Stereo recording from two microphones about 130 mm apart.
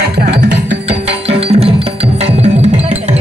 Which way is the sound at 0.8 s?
50° right (ahead or behind).